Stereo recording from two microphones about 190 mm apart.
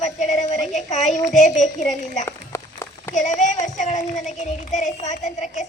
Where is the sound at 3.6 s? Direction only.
40° left (ahead or behind).